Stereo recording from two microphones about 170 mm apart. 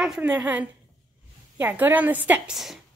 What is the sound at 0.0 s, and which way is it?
A woman's voice, 5° right (ahead or behind).